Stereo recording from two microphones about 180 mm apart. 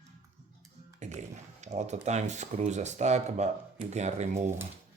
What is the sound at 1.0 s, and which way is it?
Speech, 40° right (ahead or behind).